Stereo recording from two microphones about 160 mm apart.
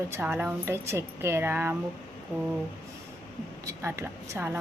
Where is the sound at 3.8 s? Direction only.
15° right (ahead or behind).